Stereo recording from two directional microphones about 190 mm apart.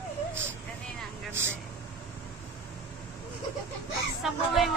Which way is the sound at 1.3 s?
15° right (ahead or behind).